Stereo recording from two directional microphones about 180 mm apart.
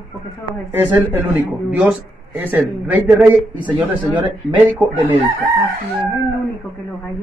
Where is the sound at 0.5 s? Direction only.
10° right (ahead or behind).